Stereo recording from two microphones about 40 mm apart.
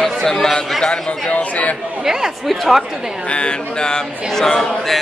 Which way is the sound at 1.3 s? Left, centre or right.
Left.